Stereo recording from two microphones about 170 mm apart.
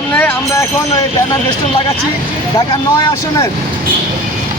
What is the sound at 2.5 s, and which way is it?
Speech, 20° left (ahead or behind).